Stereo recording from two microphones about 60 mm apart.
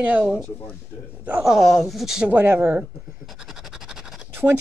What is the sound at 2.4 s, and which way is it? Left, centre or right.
Speech, right.